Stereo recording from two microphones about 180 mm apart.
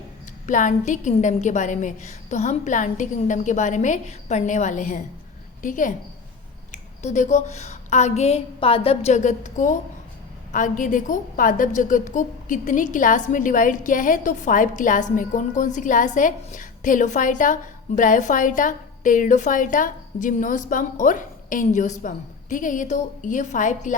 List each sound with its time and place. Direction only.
0.4 s a woman's voice: 45° left (ahead or behind)